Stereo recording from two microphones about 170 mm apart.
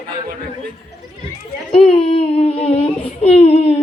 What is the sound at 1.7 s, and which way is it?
A woman's voice, 35° left (ahead or behind).